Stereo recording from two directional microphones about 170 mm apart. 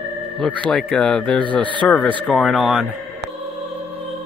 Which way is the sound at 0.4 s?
5° left (ahead or behind).